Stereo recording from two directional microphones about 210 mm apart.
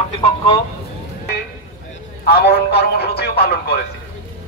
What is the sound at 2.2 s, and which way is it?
A man's voice, 50° left (ahead or behind).